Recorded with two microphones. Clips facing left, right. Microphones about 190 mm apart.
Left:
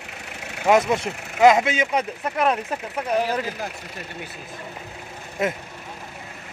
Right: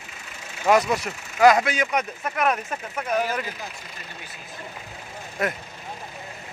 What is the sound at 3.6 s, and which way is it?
Speech, 60° left (ahead or behind).